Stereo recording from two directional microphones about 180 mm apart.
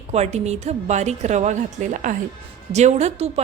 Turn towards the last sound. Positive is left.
turn(degrees=-35)  # may be behind; listen again after turning